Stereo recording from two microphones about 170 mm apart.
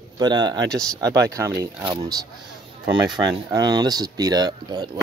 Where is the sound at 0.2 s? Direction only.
25° right (ahead or behind).